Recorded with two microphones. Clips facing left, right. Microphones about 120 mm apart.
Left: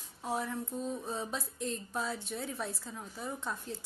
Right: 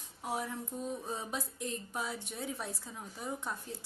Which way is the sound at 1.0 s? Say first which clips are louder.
Left 1 dB; 15° right (ahead or behind).